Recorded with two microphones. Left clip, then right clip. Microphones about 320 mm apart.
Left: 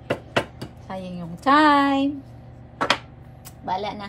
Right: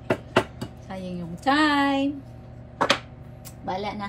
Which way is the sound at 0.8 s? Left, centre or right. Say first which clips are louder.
Left 3 dB; centre.